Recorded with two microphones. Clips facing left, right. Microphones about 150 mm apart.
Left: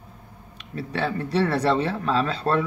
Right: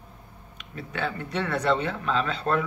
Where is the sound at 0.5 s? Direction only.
35° left (ahead or behind).